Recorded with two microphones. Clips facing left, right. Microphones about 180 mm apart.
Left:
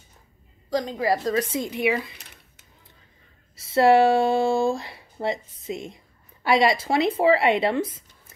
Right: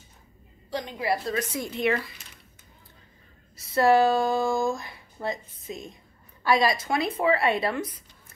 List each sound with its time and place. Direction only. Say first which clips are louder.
0.7 s a woman's voice: left 5 dB; 40° left (ahead or behind)
1.6 s speech: left 2 dB; 10° left (ahead or behind)
3.5 s speech: left 3 dB; 25° left (ahead or behind)